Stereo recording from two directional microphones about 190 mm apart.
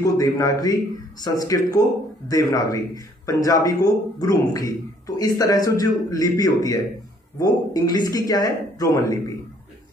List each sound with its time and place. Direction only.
0.0 s a man's voice: 20° left (ahead or behind)